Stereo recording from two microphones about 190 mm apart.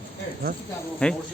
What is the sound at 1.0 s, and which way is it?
Speech, 5° left (ahead or behind).